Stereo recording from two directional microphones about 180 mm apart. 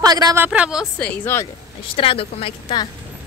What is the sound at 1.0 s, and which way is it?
Speech, 10° left (ahead or behind).